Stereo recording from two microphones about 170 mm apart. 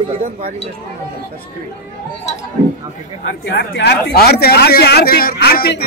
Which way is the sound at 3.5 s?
80° left.